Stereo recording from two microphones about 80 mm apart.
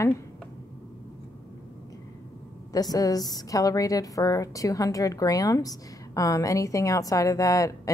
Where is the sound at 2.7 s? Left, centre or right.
Left.